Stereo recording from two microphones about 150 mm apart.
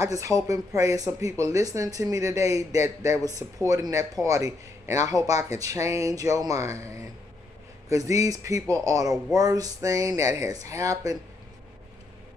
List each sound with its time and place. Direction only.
0.0 s speech: 20° right (ahead or behind)